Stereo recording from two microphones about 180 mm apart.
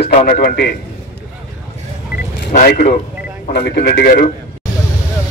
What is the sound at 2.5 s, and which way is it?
A man's voice, 60° left (ahead or behind).